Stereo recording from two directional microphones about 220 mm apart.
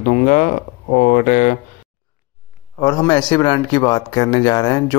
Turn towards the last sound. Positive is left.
turn(degrees=20)  # may be behind; listen again after turning